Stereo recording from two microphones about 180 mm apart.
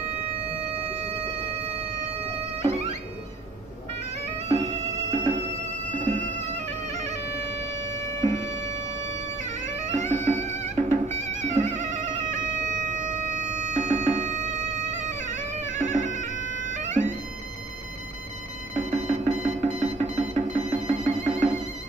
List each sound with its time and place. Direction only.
2.6 s music: 35° right (ahead or behind)
4.5 s music: 40° right (ahead or behind)
6.7 s bagpipes: 35° right (ahead or behind)
7.7 s wind instrument: 15° left (ahead or behind)
9.4 s music: 40° right (ahead or behind)
14.9 s bagpipes: 40° right (ahead or behind)
18.8 s alarm clock: 40° right (ahead or behind)
19.4 s music: 40° right (ahead or behind)